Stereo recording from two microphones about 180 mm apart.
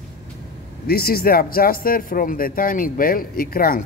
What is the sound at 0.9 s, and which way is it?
Speech, 55° left (ahead or behind).